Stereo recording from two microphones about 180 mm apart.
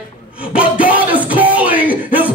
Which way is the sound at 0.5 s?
10° right (ahead or behind).